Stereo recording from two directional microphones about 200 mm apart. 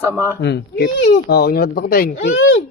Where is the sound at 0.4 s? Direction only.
55° left (ahead or behind).